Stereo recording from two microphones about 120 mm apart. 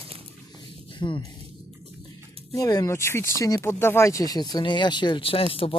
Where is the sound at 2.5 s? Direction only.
30° left (ahead or behind); by 5.7 s 50° left (ahead or behind).